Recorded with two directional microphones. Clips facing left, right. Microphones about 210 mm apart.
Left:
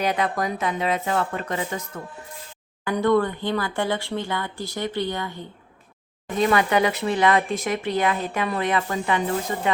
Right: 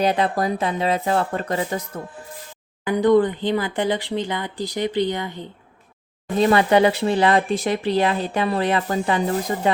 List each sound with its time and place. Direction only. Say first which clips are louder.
0.0 s speech: right 4 dB; 30° right (ahead or behind)
2.8 s speech: right 4 dB; 15° right (ahead or behind)
6.3 s speech: right 4 dB; 30° right (ahead or behind)